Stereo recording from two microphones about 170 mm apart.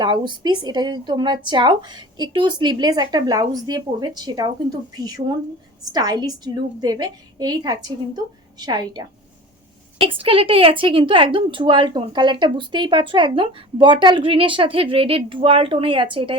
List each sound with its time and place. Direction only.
0.0 s a woman's voice: 25° right (ahead or behind)